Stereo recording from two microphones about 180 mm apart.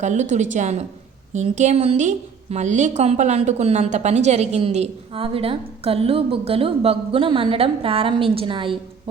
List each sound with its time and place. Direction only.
0.0 s a woman's voice: 40° right (ahead or behind)